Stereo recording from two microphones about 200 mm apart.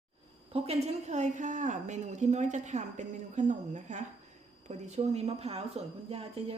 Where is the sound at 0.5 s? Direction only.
30° right (ahead or behind).